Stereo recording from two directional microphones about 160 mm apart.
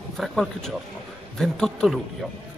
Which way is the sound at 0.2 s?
Centre (ahead or behind).